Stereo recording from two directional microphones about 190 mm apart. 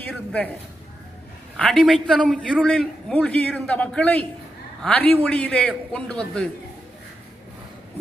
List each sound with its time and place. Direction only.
0.1 s a man's voice: 5° left (ahead or behind)
1.6 s a man's voice: 5° left (ahead or behind)